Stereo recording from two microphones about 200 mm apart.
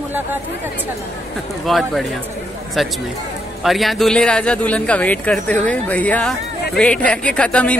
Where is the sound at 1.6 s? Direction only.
Centre (ahead or behind).